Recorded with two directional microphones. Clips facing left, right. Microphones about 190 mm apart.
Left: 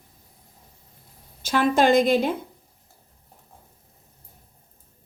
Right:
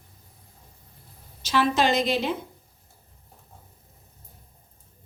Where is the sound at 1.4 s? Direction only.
50° left (ahead or behind).